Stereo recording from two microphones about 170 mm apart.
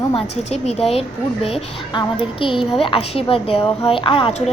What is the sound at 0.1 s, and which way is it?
A woman's voice, 35° left (ahead or behind).